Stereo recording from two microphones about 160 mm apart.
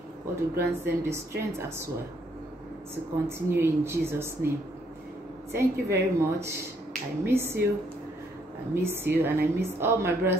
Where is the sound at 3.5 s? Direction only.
15° right (ahead or behind).